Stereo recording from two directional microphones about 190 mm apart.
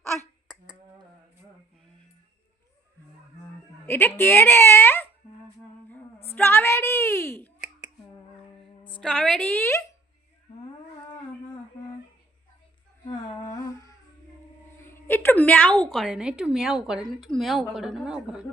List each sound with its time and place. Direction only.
3.8 s speech: 10° left (ahead or behind)
6.3 s a sound: 10° left (ahead or behind)
9.0 s a woman's voice: 5° left (ahead or behind)
13.1 s humming: 15° left (ahead or behind)
14.8 s a sound: 10° left (ahead or behind)
15.9 s a woman's voice: centre (ahead or behind)